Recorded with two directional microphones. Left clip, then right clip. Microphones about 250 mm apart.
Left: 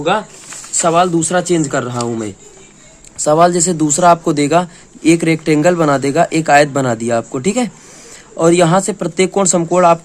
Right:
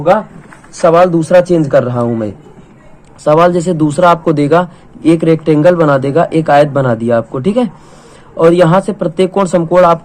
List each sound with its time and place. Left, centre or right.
0.8 s speech: centre
3.2 s speech: left
3.5 s speech: left